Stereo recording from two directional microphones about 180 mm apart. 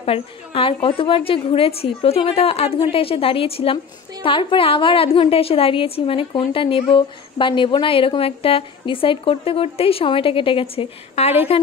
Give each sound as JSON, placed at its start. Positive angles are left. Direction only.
{"t": 0.0, "sound": "a woman's voice", "side_deg": 30}